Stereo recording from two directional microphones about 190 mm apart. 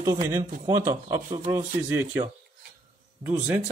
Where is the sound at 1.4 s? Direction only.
10° right (ahead or behind).